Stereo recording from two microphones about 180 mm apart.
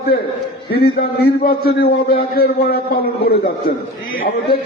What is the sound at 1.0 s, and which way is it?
A man's voice, 55° left (ahead or behind).